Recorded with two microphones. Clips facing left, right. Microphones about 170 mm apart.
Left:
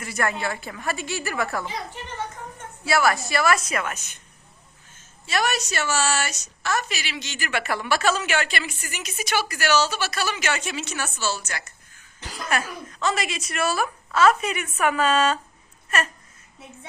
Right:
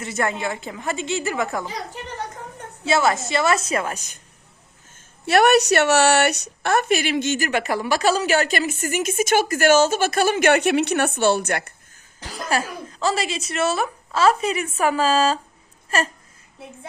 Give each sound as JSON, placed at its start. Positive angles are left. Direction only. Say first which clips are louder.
{"t": 0.0, "sound": "a woman's voice", "louder": "right 2 dB", "side_deg": -25}
{"t": 1.6, "sound": "a sound", "louder": "right 2 dB", "side_deg": -40}
{"t": 2.8, "sound": "a woman's voice", "louder": "right 2 dB", "side_deg": -20}
{"t": 5.2, "sound": "a woman's voice", "louder": "right 10 dB", "side_deg": -65}
{"t": 12.5, "sound": "a woman's voice", "louder": "right 3 dB", "side_deg": -30}
{"t": 15.9, "sound": "a sound", "louder": "right 3 dB", "side_deg": -30}